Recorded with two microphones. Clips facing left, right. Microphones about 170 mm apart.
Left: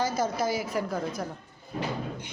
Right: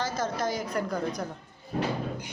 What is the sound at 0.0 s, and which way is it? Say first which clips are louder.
Speech: left 2 dB; 10° left (ahead or behind).